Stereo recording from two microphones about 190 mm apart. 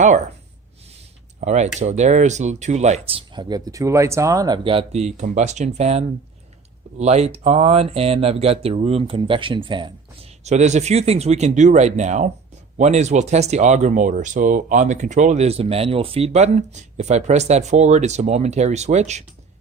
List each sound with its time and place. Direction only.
1.4 s speech: 35° right (ahead or behind)
10.4 s speech: 35° right (ahead or behind)